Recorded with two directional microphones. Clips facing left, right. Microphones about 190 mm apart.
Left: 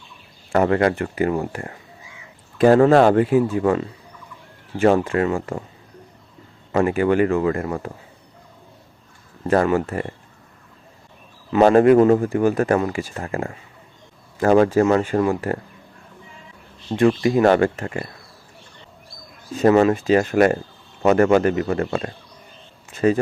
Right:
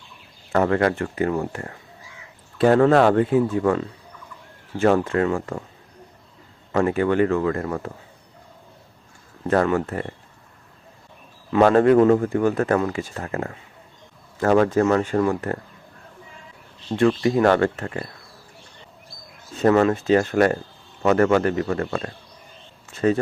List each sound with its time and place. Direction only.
0.5 s speech: 15° left (ahead or behind)
6.7 s speech: 10° left (ahead or behind)
9.5 s speech: 10° left (ahead or behind)
11.7 s speech: 10° left (ahead or behind)
16.9 s speech: 15° left (ahead or behind)
19.6 s speech: 15° left (ahead or behind)